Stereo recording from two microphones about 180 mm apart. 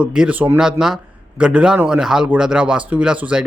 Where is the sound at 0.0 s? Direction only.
5° right (ahead or behind).